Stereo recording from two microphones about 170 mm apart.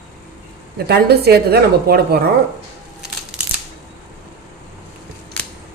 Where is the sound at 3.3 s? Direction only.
5° right (ahead or behind).